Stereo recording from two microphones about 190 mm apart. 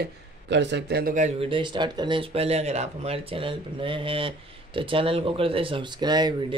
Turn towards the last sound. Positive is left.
turn(degrees=-25)  # may be behind; listen again after turning